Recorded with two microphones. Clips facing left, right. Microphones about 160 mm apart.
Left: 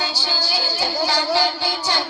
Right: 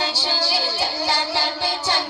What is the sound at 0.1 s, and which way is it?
Music, 30° right (ahead or behind).